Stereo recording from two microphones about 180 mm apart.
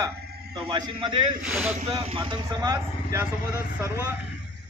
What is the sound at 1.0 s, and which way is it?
Speech, 25° right (ahead or behind).